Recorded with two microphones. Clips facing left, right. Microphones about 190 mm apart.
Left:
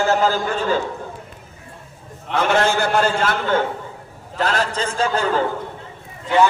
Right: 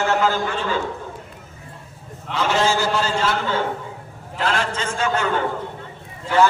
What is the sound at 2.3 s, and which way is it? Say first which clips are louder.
A man's voice: left 2 dB; 55° left (ahead or behind).